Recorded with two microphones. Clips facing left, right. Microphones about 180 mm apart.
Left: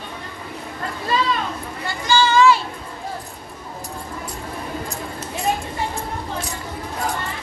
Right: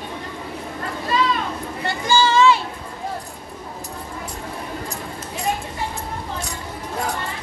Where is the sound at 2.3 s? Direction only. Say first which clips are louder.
Left 2 dB; 25° right (ahead or behind).